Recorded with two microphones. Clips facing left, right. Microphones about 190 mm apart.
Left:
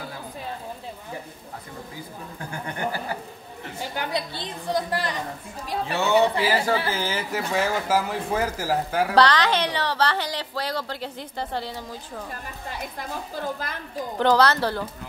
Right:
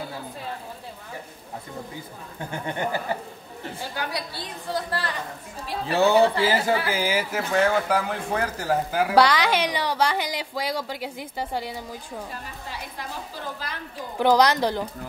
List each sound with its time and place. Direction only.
2.5 s speech: 25° right (ahead or behind)
3.9 s a woman's voice: 20° left (ahead or behind)
5.9 s speech: 35° right (ahead or behind)
6.4 s speech: 25° right (ahead or behind)
6.9 s a man's voice: 10° right (ahead or behind)
9.1 s a woman's voice: 10° right (ahead or behind)
14.1 s a woman's voice: 10° right (ahead or behind)